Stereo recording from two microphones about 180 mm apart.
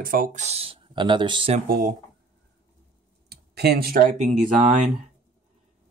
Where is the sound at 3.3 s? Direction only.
60° right (ahead or behind).